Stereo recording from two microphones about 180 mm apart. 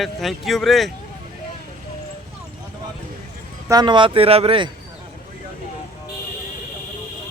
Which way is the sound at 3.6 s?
20° right (ahead or behind).